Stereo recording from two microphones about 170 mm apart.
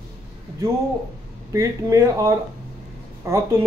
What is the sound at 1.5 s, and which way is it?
Speech, 20° right (ahead or behind).